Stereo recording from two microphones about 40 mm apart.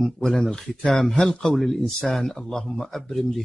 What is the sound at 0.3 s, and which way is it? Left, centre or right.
Speech, left.